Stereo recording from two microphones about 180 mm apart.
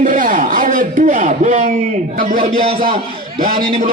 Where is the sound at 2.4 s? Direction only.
30° right (ahead or behind).